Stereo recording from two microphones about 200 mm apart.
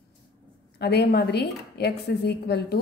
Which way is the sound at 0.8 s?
55° left (ahead or behind).